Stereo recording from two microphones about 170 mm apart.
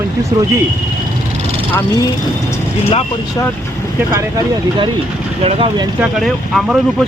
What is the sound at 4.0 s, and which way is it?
Speech, 15° right (ahead or behind).